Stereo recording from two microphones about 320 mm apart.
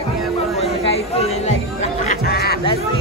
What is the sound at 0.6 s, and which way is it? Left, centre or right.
Chatter, centre.